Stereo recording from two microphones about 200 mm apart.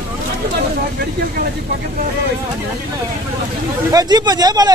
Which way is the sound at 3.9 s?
20° right (ahead or behind).